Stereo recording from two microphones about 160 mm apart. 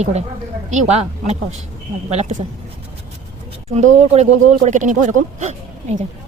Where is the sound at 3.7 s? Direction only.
45° right (ahead or behind).